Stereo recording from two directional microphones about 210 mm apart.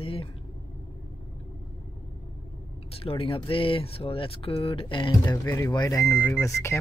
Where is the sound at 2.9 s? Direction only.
25° left (ahead or behind).